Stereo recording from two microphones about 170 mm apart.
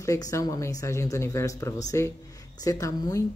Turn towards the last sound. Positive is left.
turn(degrees=20)  # may be behind; listen again after turning